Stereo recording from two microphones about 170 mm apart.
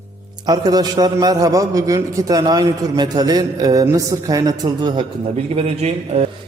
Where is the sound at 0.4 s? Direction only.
20° right (ahead or behind).